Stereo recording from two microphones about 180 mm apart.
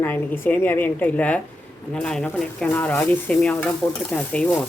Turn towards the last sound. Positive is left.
turn(degrees=5)  # may be behind; listen again after turning